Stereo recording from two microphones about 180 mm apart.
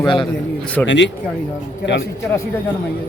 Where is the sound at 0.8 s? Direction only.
80° left.